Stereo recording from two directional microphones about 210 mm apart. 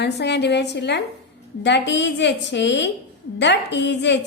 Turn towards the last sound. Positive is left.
turn(degrees=55)  # may be behind; listen again after turning